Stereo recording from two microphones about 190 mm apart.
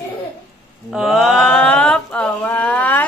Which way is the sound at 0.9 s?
5° right (ahead or behind).